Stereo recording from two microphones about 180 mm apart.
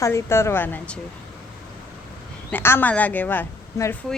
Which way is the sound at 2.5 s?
10° left (ahead or behind).